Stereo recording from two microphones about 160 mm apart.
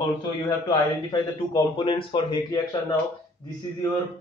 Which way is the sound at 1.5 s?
30° left (ahead or behind).